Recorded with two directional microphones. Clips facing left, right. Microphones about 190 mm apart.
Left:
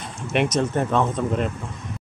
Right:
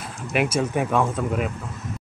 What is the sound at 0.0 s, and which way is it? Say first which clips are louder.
Speech: left 1 dB; 5° right (ahead or behind).